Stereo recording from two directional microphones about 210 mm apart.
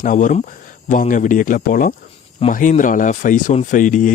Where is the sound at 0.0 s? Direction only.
35° left (ahead or behind).